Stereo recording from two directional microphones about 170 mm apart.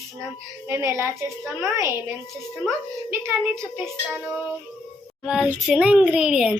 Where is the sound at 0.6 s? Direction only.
15° right (ahead or behind).